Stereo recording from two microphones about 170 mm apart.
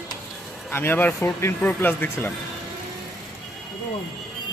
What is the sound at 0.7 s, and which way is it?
Speech, 10° left (ahead or behind).